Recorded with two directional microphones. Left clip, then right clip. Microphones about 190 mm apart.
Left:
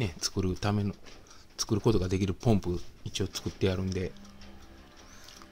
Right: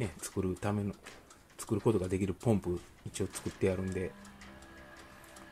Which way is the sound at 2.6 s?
10° left (ahead or behind).